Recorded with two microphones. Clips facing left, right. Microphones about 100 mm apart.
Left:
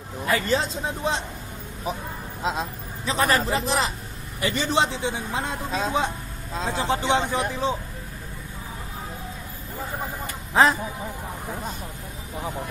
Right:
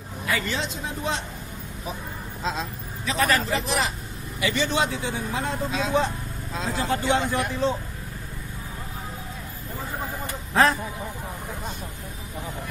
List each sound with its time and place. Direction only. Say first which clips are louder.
0.2 s speech: left 4 dB; 40° left (ahead or behind)
2.4 s speech: left 2 dB; 15° left (ahead or behind)
3.1 s a man's voice: left 1 dB; 30° left (ahead or behind)
6.5 s a man's voice: left 2 dB; 35° left (ahead or behind)
6.8 s speech: left 1 dB; 20° left (ahead or behind)
10.5 s speech: left 1 dB; 20° left (ahead or behind)